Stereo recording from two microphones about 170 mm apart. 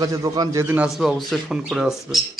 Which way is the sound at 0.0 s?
20° right (ahead or behind).